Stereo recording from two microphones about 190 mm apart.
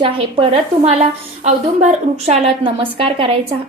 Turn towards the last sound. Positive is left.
turn(degrees=-30)  # may be behind; listen again after turning